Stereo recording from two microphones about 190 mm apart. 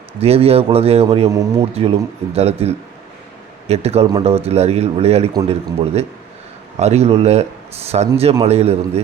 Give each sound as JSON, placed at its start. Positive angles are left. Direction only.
{"t": 0.2, "sound": "speech", "side_deg": -30}